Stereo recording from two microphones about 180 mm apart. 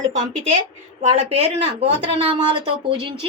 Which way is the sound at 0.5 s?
35° right (ahead or behind).